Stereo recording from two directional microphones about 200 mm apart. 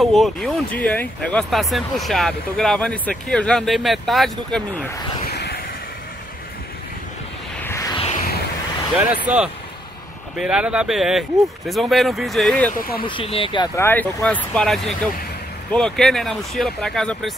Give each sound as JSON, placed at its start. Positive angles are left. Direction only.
{"t": 0.0, "sound": "speech", "side_deg": 0}
{"t": 5.2, "sound": "vehicle", "side_deg": 55}
{"t": 7.6, "sound": "a sound", "side_deg": 15}
{"t": 8.9, "sound": "speech", "side_deg": -5}
{"t": 13.0, "sound": "speech", "side_deg": 25}
{"t": 13.7, "sound": "speech", "side_deg": 10}